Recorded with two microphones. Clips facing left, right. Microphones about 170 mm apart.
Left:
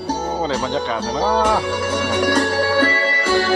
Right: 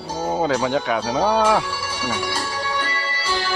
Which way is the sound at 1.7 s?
65° left (ahead or behind).